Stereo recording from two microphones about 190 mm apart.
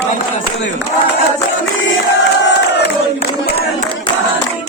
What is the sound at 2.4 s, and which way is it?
Crowd, 70° left (ahead or behind).